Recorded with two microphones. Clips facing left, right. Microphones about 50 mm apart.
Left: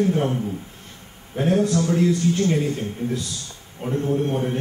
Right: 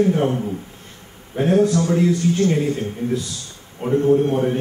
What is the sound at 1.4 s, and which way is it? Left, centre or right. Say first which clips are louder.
A man's voice: right 3 dB; right.